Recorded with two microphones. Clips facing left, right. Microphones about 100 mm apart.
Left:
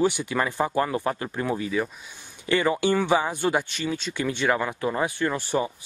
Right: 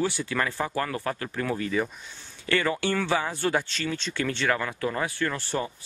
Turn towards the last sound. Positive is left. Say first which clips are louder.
# left 4 dB
turn(degrees=15)  # may be behind; listen again after turning